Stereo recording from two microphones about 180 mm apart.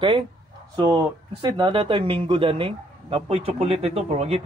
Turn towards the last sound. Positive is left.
turn(degrees=-35)  # may be behind; listen again after turning